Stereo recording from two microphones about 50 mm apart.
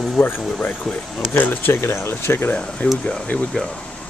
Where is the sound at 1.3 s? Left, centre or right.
Left.